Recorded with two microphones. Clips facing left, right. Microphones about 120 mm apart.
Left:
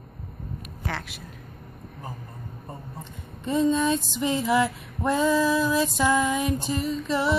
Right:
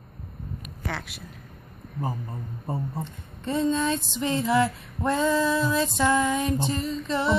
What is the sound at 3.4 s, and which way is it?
Female singing, 15° left (ahead or behind).